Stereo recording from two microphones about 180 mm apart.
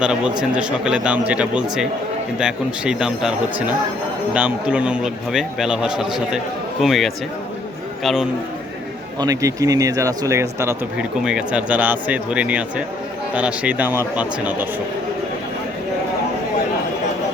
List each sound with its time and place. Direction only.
0.0 s a man's voice: 5° right (ahead or behind)
9.1 s speech: 20° right (ahead or behind)
11.2 s a man's voice: 5° right (ahead or behind)